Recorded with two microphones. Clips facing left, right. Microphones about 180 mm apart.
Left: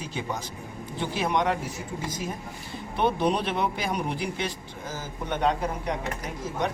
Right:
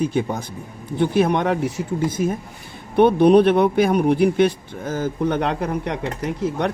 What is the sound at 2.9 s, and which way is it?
Speech, 60° right (ahead or behind).